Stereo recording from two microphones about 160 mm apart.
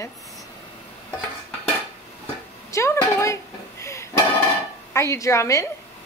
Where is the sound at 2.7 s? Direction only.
15° left (ahead or behind).